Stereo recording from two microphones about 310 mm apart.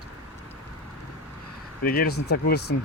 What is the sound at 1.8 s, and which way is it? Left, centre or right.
Speech, left.